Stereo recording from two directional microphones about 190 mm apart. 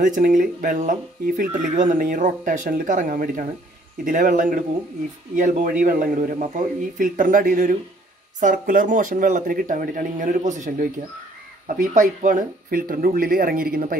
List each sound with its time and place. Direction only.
0.0 s speech: 45° right (ahead or behind)